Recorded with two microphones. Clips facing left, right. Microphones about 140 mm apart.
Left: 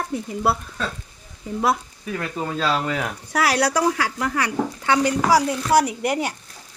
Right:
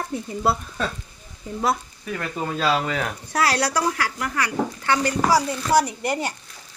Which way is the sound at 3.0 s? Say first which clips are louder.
Even; 10° left (ahead or behind).